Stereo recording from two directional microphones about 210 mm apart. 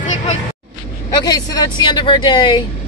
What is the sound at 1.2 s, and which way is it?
Speech, 20° left (ahead or behind).